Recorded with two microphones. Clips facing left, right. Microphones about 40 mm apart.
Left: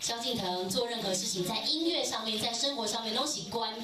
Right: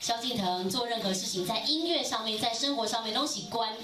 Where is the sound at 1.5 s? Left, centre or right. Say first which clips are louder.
Right 2 dB; right.